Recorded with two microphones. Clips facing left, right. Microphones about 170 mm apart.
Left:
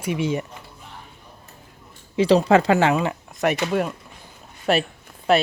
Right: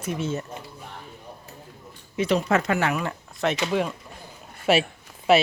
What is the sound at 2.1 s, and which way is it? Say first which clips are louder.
Speech: left 6 dB; 30° left (ahead or behind).